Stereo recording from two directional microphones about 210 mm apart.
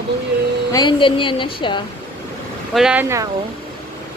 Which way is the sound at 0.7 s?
20° left (ahead or behind).